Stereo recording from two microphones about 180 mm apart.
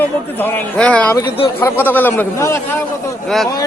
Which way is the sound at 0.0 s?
10° left (ahead or behind).